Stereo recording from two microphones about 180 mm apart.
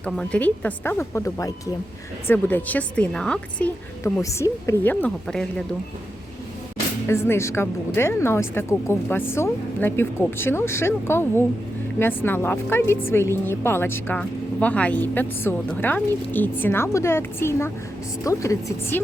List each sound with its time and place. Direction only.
0.0 s a woman's voice: 5° left (ahead or behind)
4.0 s a woman's voice: 15° left (ahead or behind)
7.1 s a woman's voice: 15° left (ahead or behind)